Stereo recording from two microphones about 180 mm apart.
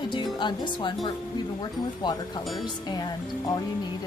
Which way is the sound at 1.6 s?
25° left (ahead or behind).